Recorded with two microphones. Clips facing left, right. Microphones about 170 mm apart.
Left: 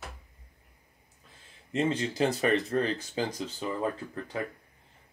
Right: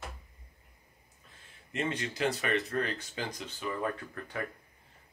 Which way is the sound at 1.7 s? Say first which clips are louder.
Left 6 dB; 30° left (ahead or behind).